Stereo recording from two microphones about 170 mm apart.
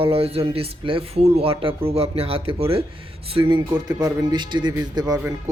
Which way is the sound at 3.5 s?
25° right (ahead or behind).